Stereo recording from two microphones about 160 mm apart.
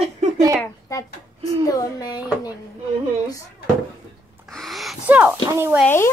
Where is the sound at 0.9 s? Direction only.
20° left (ahead or behind).